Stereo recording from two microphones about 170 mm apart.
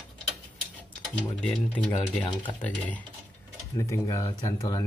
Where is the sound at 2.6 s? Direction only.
10° left (ahead or behind).